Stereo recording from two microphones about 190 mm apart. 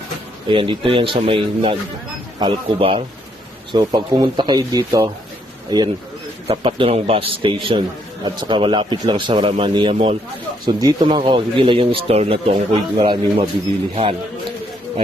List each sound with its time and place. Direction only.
0.4 s speech: 25° right (ahead or behind)